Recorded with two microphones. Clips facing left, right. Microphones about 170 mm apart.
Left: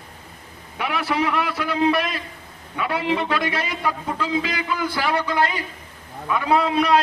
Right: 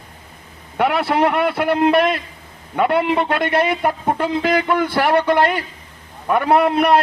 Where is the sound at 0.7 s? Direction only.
60° right (ahead or behind).